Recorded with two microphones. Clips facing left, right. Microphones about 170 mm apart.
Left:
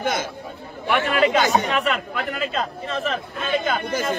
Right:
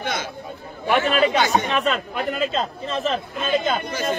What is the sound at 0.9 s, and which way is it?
A man's voice, 20° right (ahead or behind).